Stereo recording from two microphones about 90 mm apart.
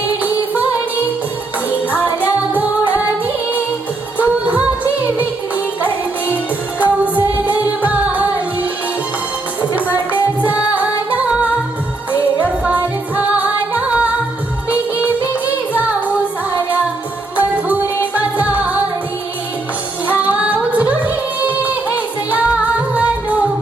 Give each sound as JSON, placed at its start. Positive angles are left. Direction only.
{"t": 2.5, "sound": "music", "side_deg": -15}
{"t": 4.2, "sound": "music", "side_deg": -15}
{"t": 6.3, "sound": "music", "side_deg": -15}
{"t": 9.7, "sound": "music", "side_deg": -15}
{"t": 12.4, "sound": "music", "side_deg": -15}
{"t": 17.3, "sound": "music", "side_deg": -15}
{"t": 20.1, "sound": "music", "side_deg": -15}